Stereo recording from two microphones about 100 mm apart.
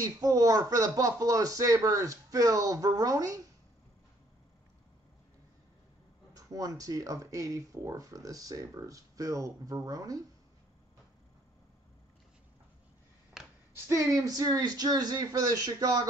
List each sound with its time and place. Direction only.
0.0 s speech: 35° right (ahead or behind)
6.3 s speech: 40° right (ahead or behind)
13.8 s speech: 30° right (ahead or behind)